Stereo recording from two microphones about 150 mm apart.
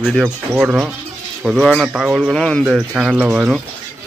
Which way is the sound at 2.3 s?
5° left (ahead or behind).